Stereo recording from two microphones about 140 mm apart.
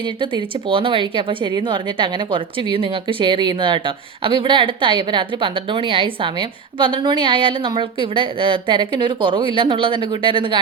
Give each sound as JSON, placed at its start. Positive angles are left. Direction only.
{"t": 0.2, "sound": "speech", "side_deg": -35}